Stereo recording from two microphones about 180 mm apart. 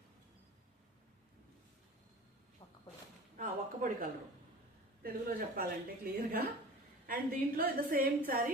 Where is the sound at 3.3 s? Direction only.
45° right (ahead or behind).